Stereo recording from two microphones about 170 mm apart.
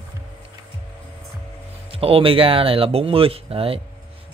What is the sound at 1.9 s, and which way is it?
Speech, 35° right (ahead or behind).